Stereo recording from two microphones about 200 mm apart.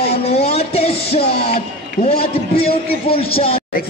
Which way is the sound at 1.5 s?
30° left (ahead or behind).